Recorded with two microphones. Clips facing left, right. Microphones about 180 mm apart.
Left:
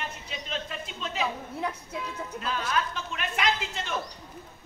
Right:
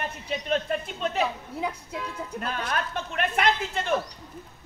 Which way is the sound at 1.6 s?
10° right (ahead or behind).